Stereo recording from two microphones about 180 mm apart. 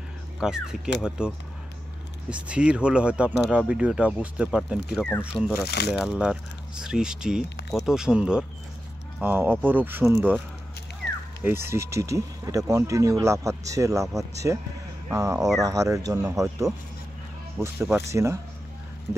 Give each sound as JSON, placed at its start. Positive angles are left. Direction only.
{"t": 0.4, "sound": "speech", "side_deg": -5}
{"t": 5.7, "sound": "speech", "side_deg": 65}
{"t": 5.9, "sound": "speech", "side_deg": -5}
{"t": 11.4, "sound": "speech", "side_deg": -15}